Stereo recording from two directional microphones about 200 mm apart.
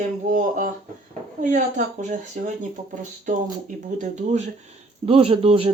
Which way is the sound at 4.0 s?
35° right (ahead or behind).